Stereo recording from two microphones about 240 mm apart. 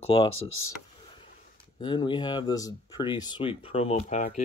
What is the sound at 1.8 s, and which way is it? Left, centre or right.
Speech, centre.